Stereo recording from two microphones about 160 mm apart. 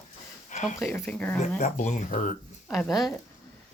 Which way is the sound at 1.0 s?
10° left (ahead or behind).